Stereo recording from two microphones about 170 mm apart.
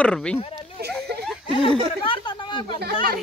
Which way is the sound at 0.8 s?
70° right (ahead or behind).